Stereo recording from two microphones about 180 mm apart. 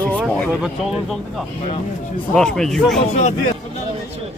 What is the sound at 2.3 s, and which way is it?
Speech, 5° left (ahead or behind).